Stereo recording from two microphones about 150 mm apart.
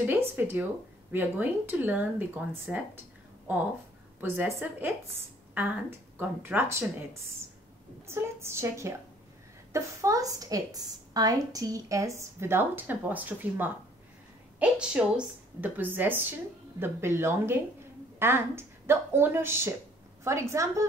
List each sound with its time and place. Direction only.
0.0 s a woman's voice: 15° right (ahead or behind)
4.6 s a woman's voice: 15° right (ahead or behind)
8.1 s a woman's voice: 15° right (ahead or behind)